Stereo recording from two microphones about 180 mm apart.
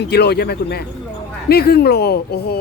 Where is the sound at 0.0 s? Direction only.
65° left (ahead or behind).